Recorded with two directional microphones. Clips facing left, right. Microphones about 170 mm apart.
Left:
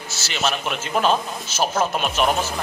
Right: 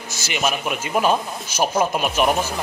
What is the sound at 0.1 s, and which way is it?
A man's voice, 15° right (ahead or behind).